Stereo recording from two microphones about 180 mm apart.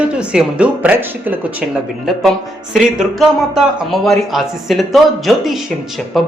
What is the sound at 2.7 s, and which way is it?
A man's voice, centre (ahead or behind).